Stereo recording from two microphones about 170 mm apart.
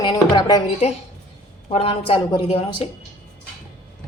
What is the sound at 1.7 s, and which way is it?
A woman's voice, 30° left (ahead or behind).